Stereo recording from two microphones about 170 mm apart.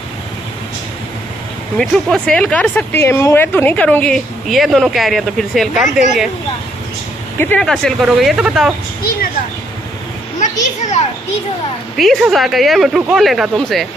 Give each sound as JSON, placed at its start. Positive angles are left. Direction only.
{"t": 1.8, "sound": "speech", "side_deg": 5}
{"t": 7.3, "sound": "speech", "side_deg": 10}
{"t": 10.4, "sound": "a child's voice", "side_deg": 45}
{"t": 12.0, "sound": "speech", "side_deg": 0}